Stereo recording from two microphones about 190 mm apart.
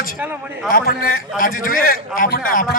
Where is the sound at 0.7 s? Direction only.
50° left (ahead or behind).